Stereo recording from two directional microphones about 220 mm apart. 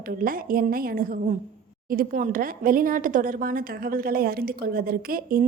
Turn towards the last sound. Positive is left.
turn(degrees=-40)  # may be behind; listen again after turning